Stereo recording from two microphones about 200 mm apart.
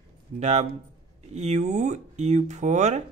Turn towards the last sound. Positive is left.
turn(degrees=-35)  # may be behind; listen again after turning